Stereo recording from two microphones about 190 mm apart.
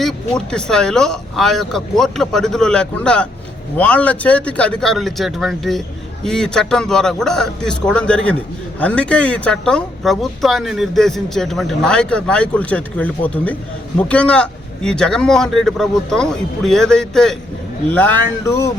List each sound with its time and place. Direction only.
0.0 s speech: 5° left (ahead or behind)